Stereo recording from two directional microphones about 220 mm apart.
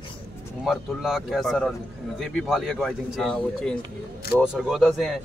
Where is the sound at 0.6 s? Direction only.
Centre (ahead or behind).